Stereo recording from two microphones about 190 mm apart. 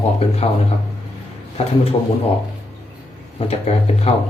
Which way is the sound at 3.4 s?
30° left (ahead or behind).